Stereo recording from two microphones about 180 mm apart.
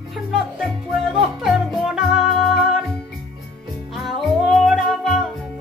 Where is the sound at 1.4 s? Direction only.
Centre (ahead or behind).